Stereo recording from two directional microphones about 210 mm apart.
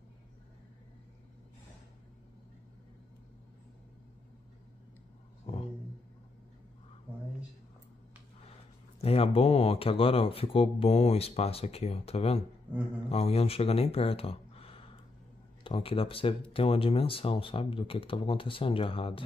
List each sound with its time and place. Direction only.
9.0 s speech: 30° left (ahead or behind)